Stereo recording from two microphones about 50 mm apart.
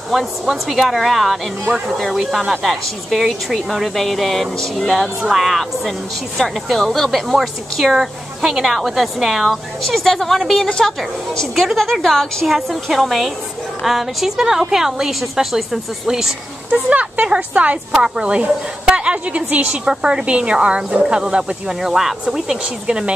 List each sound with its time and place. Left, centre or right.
0.1 s a woman's voice: centre
16.7 s a woman's voice: right
17.9 s a woman's voice: centre